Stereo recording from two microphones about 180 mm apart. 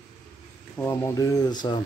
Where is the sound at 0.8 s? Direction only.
15° left (ahead or behind).